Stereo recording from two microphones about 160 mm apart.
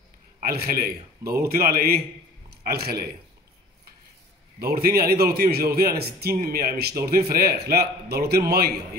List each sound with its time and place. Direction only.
0.4 s a man's voice: 70° right (ahead or behind)
2.5 s a man's voice: 80° right
4.6 s a man's voice: 70° right (ahead or behind)